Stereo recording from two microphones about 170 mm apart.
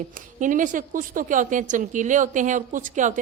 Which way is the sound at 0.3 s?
50° right (ahead or behind).